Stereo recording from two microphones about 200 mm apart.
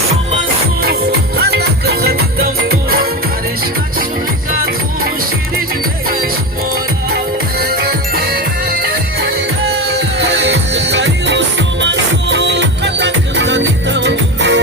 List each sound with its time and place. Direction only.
1.4 s music: 55° right (ahead or behind)
9.9 s music: 60° right (ahead or behind)